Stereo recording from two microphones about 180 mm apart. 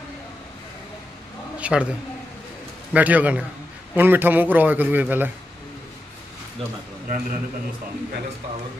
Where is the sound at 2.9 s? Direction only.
10° right (ahead or behind).